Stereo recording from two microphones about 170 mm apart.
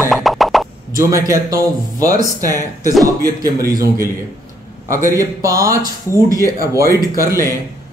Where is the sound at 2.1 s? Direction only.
20° right (ahead or behind).